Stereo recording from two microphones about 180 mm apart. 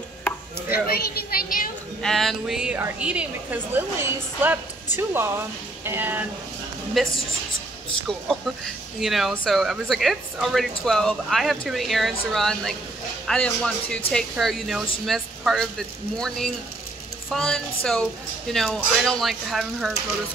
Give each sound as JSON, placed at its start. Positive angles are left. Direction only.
{"t": 0.7, "sound": "a child's voice", "side_deg": 55}
{"t": 2.0, "sound": "a woman's voice", "side_deg": 0}
{"t": 7.0, "sound": "speech", "side_deg": 0}
{"t": 9.0, "sound": "speech", "side_deg": 0}